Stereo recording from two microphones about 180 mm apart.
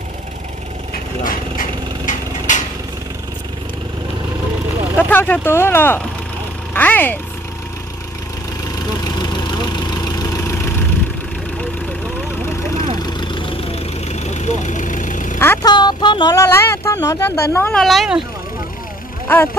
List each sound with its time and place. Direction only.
1.2 s a sound: 45° left (ahead or behind)
4.9 s speech: 10° left (ahead or behind)
6.7 s vehicle: 10° left (ahead or behind)
13.0 s vehicle: 25° left (ahead or behind); by 15.3 s 45° left (ahead or behind)
15.3 s speech: 15° left (ahead or behind)
15.7 s speech: 25° left (ahead or behind)
17.8 s speech: centre (ahead or behind)
19.2 s speech: 10° left (ahead or behind)